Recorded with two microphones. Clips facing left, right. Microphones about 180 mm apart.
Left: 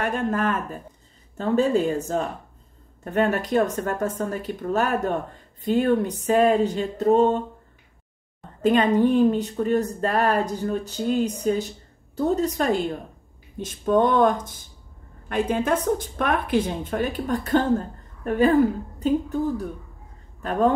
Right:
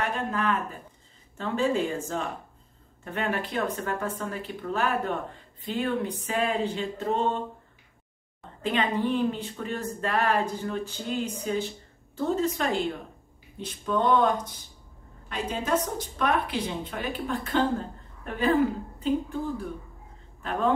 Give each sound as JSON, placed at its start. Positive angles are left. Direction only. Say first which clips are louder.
{"t": 0.0, "sound": "a woman's voice", "louder": "left 5 dB", "side_deg": 50}
{"t": 8.6, "sound": "a woman's voice", "louder": "left 8 dB", "side_deg": 45}